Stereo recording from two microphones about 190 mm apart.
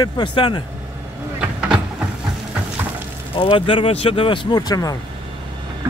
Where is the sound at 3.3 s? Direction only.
25° left (ahead or behind).